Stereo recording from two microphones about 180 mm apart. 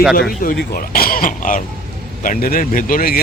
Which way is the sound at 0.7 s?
55° left (ahead or behind).